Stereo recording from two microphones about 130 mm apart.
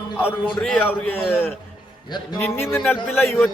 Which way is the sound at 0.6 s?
10° left (ahead or behind).